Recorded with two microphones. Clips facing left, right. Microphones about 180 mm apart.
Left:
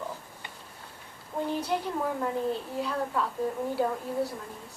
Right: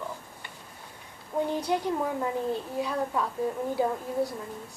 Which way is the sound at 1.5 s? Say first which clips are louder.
Even; 15° right (ahead or behind).